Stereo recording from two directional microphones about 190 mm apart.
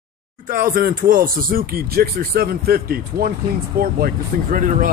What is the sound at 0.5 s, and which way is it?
Speech, 45° right (ahead or behind).